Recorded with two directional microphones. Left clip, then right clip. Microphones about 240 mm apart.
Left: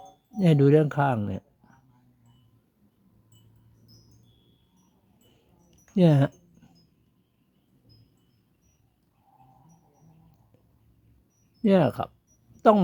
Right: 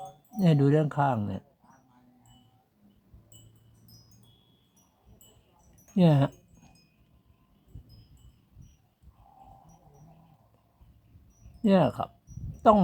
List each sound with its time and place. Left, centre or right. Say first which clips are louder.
0.3 s speech: left 5 dB; centre
5.9 s speech: left 3 dB; centre
11.6 s speech: left 2 dB; centre